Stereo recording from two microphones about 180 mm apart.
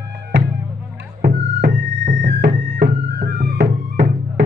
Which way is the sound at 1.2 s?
55° right (ahead or behind).